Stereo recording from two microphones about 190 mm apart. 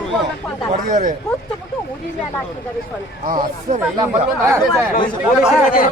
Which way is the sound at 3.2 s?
45° right (ahead or behind).